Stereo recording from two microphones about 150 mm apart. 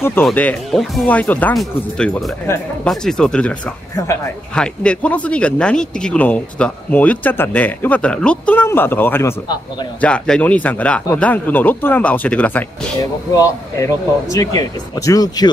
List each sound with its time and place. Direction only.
0.0 s speech: 15° left (ahead or behind)
2.4 s speech: 15° left (ahead or behind)
2.9 s speech: 5° left (ahead or behind)
13.3 s speech: 20° left (ahead or behind)